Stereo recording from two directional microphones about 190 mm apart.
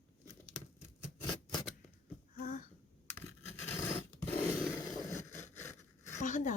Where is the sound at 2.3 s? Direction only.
50° left (ahead or behind).